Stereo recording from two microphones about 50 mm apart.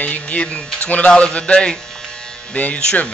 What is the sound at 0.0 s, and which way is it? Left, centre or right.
Speech, left.